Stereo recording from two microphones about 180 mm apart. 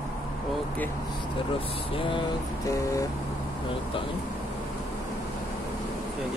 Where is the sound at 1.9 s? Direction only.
30° left (ahead or behind).